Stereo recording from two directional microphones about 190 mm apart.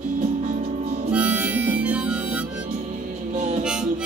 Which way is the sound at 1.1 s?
5° right (ahead or behind).